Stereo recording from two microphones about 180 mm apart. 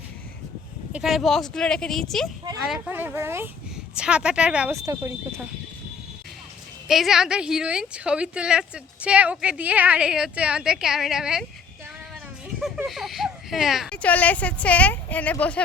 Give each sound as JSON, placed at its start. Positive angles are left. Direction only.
{"t": 0.9, "sound": "speech", "side_deg": 0}
{"t": 4.8, "sound": "speech", "side_deg": -15}
{"t": 6.8, "sound": "speech", "side_deg": 0}
{"t": 12.5, "sound": "a child's voice", "side_deg": 0}